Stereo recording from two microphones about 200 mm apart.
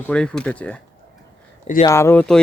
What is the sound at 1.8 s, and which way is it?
Speech, 15° left (ahead or behind).